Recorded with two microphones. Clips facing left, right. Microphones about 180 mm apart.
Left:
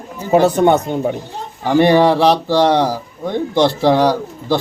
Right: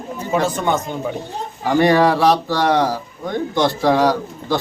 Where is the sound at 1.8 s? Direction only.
25° left (ahead or behind).